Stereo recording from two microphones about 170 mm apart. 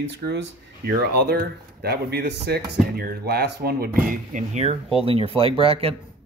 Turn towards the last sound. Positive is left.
turn(degrees=-35)  # may be behind; listen again after turning